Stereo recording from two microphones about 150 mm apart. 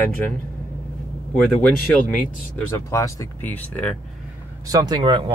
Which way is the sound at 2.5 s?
20° left (ahead or behind).